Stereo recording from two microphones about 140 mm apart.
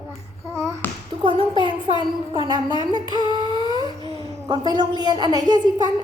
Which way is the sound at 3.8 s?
30° left (ahead or behind).